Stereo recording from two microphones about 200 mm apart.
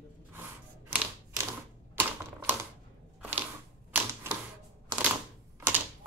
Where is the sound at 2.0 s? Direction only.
10° right (ahead or behind).